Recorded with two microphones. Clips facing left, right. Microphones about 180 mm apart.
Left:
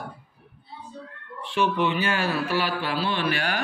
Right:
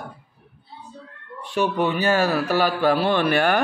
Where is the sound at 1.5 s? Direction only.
45° right (ahead or behind).